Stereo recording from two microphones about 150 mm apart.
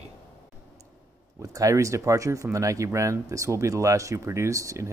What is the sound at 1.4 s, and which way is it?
Speech, 20° right (ahead or behind).